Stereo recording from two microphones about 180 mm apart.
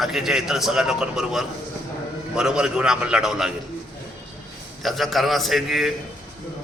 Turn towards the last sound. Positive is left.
turn(degrees=0)  # may be behind; listen again after turning